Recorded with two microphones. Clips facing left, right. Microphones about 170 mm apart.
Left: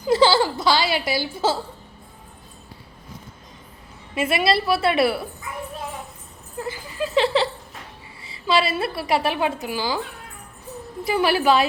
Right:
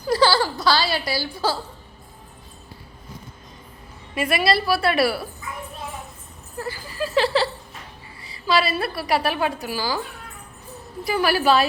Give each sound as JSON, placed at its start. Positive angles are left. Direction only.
{"t": 0.0, "sound": "speech", "side_deg": 20}
{"t": 4.1, "sound": "a woman's voice", "side_deg": 25}
{"t": 6.6, "sound": "a woman's voice", "side_deg": 20}
{"t": 11.0, "sound": "a woman's voice", "side_deg": 25}